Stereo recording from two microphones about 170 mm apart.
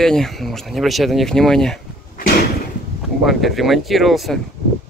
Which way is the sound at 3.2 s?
Centre (ahead or behind).